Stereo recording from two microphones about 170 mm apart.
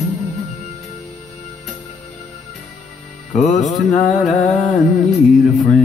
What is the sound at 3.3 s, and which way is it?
Music, 45° left (ahead or behind).